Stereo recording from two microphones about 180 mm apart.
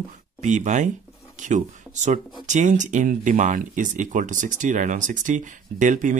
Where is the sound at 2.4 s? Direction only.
45° right (ahead or behind).